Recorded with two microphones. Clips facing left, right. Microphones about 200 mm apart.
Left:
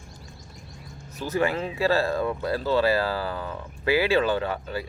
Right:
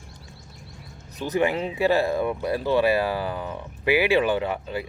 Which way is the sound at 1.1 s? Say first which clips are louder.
Right 2 dB; 15° right (ahead or behind).